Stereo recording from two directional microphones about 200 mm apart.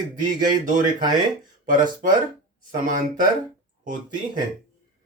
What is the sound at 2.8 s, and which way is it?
Speech, 40° right (ahead or behind).